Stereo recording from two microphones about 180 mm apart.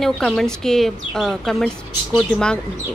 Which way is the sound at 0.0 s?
5° left (ahead or behind).